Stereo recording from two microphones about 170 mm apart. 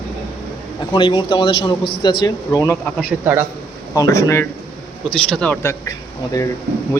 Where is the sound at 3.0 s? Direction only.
10° right (ahead or behind).